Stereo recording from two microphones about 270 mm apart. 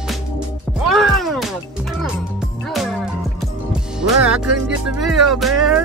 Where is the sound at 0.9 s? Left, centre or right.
Centre.